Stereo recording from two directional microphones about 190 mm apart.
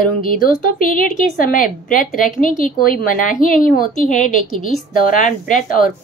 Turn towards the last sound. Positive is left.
turn(degrees=45)  # may be behind; listen again after turning